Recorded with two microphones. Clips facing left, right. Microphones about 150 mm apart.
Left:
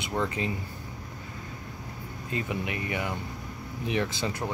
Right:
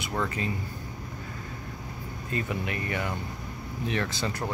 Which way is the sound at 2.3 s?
15° left (ahead or behind).